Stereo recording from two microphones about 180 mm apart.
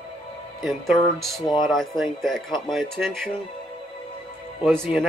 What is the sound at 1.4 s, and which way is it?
Speech, 25° left (ahead or behind).